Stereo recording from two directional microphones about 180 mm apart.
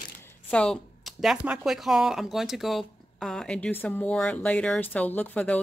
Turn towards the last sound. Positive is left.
turn(degrees=10)  # may be behind; listen again after turning